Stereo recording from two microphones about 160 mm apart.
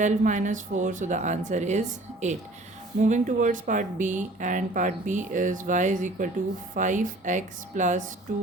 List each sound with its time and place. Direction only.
0.0 s speech: 50° right (ahead or behind)